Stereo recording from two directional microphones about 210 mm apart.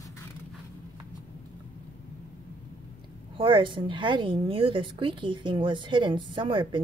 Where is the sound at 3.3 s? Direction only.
25° right (ahead or behind).